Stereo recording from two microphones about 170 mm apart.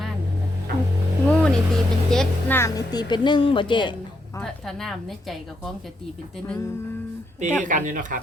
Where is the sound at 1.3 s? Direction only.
5° left (ahead or behind).